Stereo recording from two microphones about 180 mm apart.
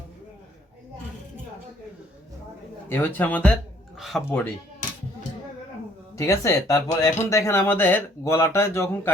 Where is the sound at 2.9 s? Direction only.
10° left (ahead or behind).